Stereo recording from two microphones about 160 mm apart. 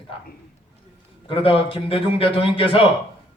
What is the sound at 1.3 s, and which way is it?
A man's voice, 35° left (ahead or behind).